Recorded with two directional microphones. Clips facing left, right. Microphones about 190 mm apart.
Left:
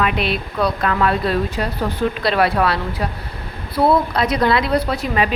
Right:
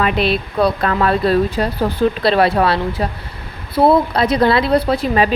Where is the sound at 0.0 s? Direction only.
35° right (ahead or behind).